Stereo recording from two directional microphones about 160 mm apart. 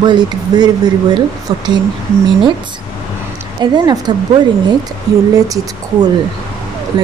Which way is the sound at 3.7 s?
25° right (ahead or behind).